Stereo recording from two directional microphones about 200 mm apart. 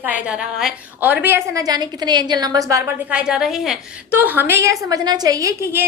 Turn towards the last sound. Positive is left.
turn(degrees=-15)  # may be behind; listen again after turning